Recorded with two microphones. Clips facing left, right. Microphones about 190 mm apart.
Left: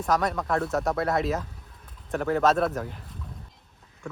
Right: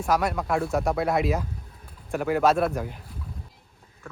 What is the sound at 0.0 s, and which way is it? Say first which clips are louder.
Speech: right 1 dB; centre (ahead or behind).